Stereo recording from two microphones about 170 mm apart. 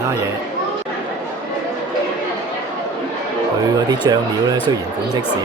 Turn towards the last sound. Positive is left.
turn(degrees=-20)  # may be behind; listen again after turning